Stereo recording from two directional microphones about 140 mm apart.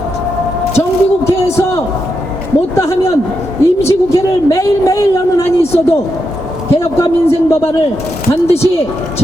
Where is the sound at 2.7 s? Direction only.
20° left (ahead or behind).